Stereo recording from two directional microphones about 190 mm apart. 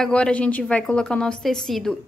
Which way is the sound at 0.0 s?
5° left (ahead or behind).